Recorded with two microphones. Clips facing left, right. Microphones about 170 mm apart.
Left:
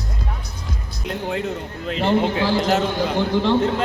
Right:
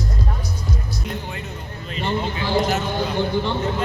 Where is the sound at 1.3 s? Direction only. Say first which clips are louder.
Left 8 dB; 75° left (ahead or behind).